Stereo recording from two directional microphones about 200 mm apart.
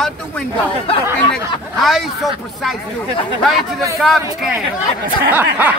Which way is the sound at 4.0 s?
Centre (ahead or behind).